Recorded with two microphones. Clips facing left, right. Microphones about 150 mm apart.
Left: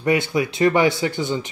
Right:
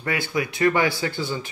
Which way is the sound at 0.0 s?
20° left (ahead or behind).